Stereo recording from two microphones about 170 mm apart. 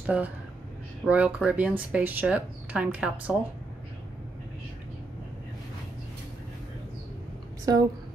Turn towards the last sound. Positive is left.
turn(degrees=-20)  # may be behind; listen again after turning